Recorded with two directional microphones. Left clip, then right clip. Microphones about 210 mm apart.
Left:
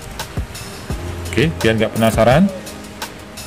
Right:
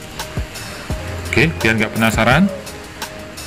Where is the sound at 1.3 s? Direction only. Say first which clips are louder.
Right 1 dB; 30° left (ahead or behind).